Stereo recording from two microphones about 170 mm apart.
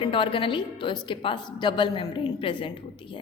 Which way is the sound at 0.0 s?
30° left (ahead or behind).